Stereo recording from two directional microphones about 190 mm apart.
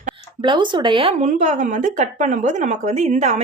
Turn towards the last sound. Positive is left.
turn(degrees=-35)  # may be behind; listen again after turning